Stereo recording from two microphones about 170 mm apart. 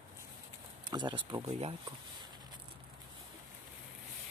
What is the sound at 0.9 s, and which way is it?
Speech, 30° right (ahead or behind).